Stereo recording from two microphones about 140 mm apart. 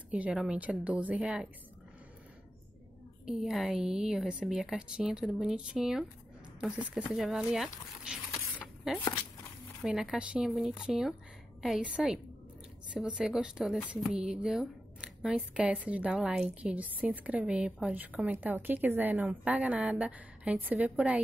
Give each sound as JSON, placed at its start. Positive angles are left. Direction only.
{"t": 0.1, "sound": "a woman's voice", "side_deg": -10}
{"t": 3.3, "sound": "speech", "side_deg": 0}
{"t": 8.9, "sound": "a woman's voice", "side_deg": 0}